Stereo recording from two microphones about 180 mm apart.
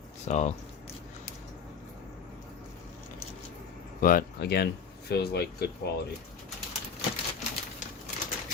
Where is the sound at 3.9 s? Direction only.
50° left (ahead or behind).